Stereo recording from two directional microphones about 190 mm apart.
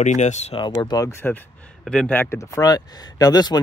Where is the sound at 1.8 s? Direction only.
5° left (ahead or behind); by 3.6 s 20° left (ahead or behind).